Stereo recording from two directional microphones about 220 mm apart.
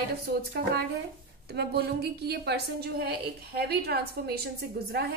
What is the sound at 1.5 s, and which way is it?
A woman's voice, 45° right (ahead or behind).